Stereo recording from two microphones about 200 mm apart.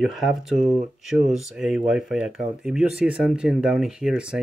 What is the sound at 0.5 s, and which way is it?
Speech, 35° right (ahead or behind).